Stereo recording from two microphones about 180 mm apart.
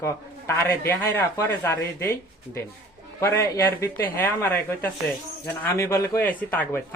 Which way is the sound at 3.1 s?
15° left (ahead or behind).